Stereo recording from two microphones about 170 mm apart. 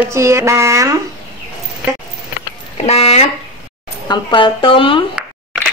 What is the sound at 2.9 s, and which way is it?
Speech, 40° left (ahead or behind).